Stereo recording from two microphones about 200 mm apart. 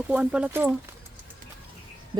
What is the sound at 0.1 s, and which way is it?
Speech, 5° right (ahead or behind).